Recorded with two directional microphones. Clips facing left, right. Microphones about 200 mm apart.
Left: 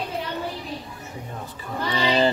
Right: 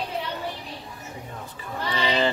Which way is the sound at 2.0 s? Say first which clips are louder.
Left 3 dB; 35° left (ahead or behind).